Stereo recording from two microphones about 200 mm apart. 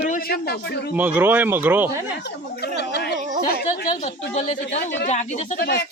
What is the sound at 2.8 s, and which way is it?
Speech, 55° left (ahead or behind).